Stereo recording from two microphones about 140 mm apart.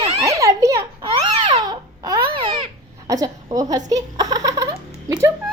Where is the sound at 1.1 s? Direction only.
40° right (ahead or behind).